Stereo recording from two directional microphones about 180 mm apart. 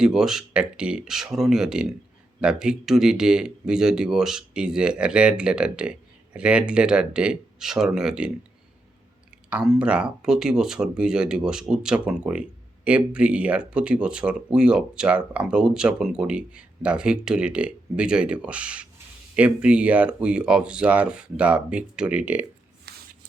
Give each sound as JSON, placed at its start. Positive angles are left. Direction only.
{"t": 0.0, "sound": "speech", "side_deg": -5}
{"t": 9.5, "sound": "speech", "side_deg": -5}
{"t": 22.9, "sound": "spray", "side_deg": -65}